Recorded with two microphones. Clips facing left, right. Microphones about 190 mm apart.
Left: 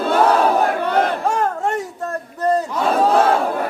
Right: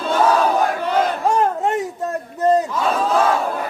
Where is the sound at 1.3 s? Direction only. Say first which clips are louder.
Right 2 dB; 20° right (ahead or behind).